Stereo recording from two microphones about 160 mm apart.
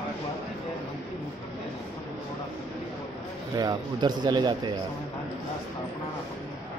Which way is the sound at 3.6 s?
25° right (ahead or behind).